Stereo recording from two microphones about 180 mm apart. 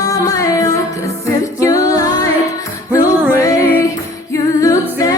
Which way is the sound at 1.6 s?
20° left (ahead or behind).